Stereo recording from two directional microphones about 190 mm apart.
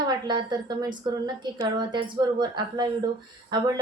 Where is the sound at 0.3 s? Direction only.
25° right (ahead or behind).